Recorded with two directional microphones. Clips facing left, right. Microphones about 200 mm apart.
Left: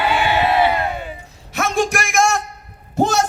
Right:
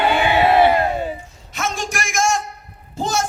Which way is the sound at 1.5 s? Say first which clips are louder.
Left 6 dB; 60° left (ahead or behind).